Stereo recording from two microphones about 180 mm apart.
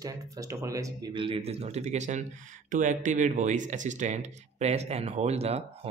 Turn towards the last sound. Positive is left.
turn(degrees=-35)  # may be behind; listen again after turning